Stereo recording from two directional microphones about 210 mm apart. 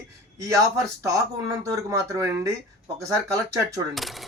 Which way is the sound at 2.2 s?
15° right (ahead or behind).